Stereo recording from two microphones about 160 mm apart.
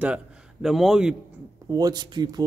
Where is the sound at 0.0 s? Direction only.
5° right (ahead or behind).